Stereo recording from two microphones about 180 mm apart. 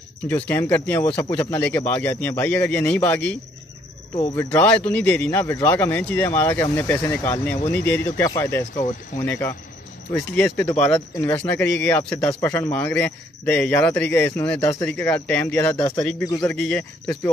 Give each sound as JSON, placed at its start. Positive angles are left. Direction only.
{"t": 0.3, "sound": "speech", "side_deg": 15}
{"t": 4.4, "sound": "speech", "side_deg": 10}